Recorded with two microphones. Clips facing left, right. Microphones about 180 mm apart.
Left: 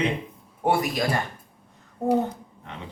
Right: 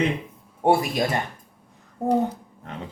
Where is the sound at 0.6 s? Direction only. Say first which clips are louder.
Right 3 dB; 25° right (ahead or behind).